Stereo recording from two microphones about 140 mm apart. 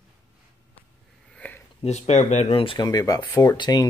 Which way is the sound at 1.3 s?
10° left (ahead or behind).